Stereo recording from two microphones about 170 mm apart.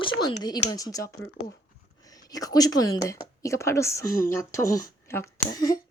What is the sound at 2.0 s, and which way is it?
A woman's voice, 20° left (ahead or behind).